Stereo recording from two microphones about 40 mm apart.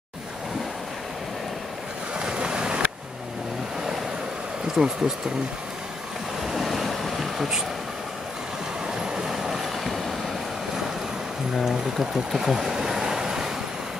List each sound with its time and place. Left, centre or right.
2.1 s waves: right
4.7 s speech: centre
6.4 s ocean: centre
8.8 s vehicle: centre
11.6 s speech: centre
12.3 s waves: centre